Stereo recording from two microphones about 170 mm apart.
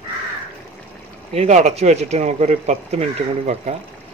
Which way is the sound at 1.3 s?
40° right (ahead or behind).